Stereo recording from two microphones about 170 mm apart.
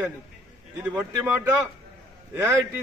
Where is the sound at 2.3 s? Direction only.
15° right (ahead or behind).